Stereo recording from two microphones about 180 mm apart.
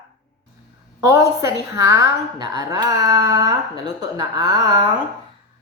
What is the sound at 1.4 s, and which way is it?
A woman's voice, 15° right (ahead or behind).